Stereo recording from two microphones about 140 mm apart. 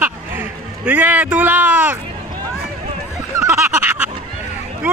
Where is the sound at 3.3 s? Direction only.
15° right (ahead or behind).